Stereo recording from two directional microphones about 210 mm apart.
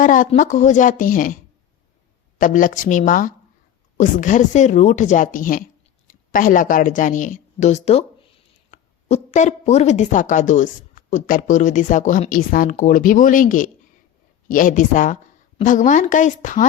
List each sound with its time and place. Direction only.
0.0 s a woman's voice: 40° left (ahead or behind)
2.4 s a woman's voice: 40° left (ahead or behind)